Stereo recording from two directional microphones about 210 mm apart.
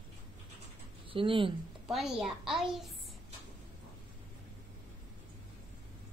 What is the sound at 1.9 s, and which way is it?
A woman's voice, centre (ahead or behind).